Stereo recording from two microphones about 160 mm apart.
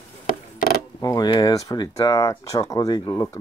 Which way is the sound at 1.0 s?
25° left (ahead or behind).